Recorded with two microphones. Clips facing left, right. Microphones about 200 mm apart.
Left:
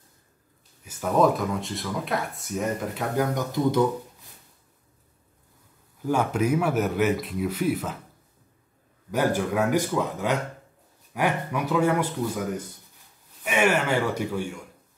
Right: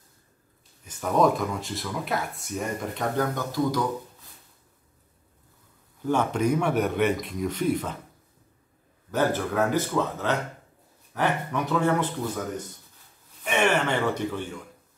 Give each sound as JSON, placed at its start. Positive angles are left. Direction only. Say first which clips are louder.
{"t": 0.8, "sound": "speech", "louder": "left 1 dB", "side_deg": 5}
{"t": 3.3, "sound": "speech", "louder": "left 3 dB", "side_deg": 20}
{"t": 6.0, "sound": "speech", "louder": "even", "side_deg": 5}
{"t": 9.1, "sound": "speech", "louder": "left 1 dB", "side_deg": 10}
{"t": 13.4, "sound": "speech", "louder": "left 1 dB", "side_deg": 5}